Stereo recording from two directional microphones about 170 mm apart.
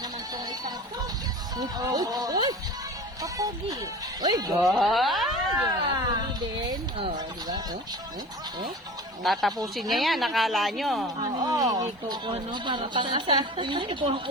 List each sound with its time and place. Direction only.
1.5 s speech: 20° right (ahead or behind)
4.6 s a woman's voice: centre (ahead or behind)
5.6 s speech: 25° right (ahead or behind)
9.2 s a woman's voice: centre (ahead or behind)
11.2 s speech: 20° right (ahead or behind)